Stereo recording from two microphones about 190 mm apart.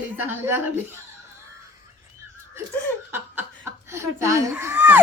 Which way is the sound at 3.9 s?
15° right (ahead or behind).